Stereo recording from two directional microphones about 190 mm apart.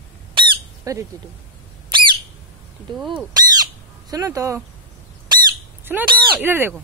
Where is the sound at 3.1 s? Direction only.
20° right (ahead or behind).